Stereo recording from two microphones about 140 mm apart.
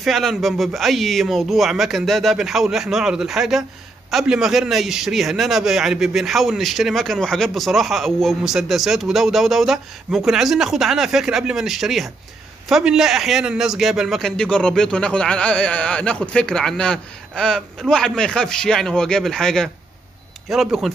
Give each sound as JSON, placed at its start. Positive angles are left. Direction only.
{"t": 0.0, "sound": "a man's voice", "side_deg": 0}